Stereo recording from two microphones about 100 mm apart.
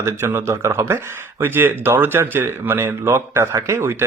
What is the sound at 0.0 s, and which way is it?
Speech, 25° right (ahead or behind).